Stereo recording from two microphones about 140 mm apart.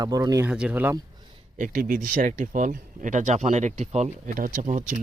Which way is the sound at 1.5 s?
80° right.